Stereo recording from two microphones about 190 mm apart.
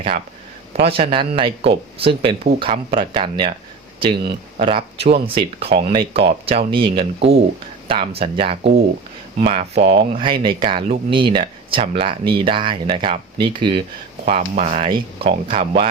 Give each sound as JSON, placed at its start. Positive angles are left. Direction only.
{"t": 0.7, "sound": "speech", "side_deg": -30}